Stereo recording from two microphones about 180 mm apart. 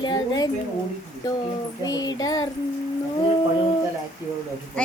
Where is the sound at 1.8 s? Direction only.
20° left (ahead or behind).